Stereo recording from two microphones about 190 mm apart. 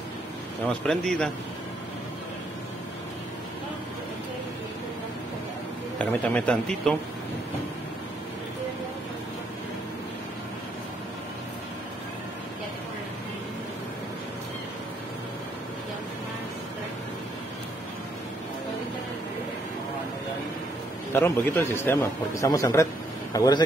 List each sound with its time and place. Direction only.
0.8 s a man's voice: 5° left (ahead or behind)
5.9 s a man's voice: 5° left (ahead or behind)
21.1 s a man's voice: 15° left (ahead or behind)